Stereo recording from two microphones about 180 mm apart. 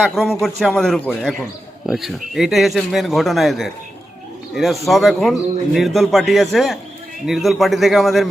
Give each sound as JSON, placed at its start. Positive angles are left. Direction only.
{"t": 0.0, "sound": "speech", "side_deg": 0}